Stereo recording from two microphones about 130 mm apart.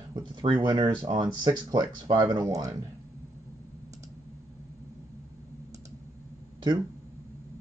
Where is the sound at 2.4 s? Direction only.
25° right (ahead or behind).